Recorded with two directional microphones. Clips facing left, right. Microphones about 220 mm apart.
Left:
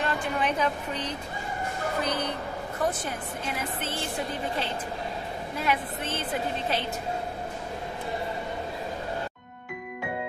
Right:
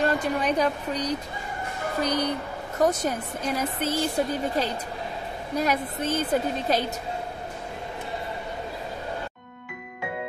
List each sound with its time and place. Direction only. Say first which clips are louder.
0.0 s speech: right 4 dB; 40° right (ahead or behind)
5.6 s speech: right 4 dB; 40° right (ahead or behind)